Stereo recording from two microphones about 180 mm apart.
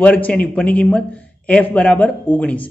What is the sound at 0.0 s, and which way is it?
A man's voice, 5° left (ahead or behind).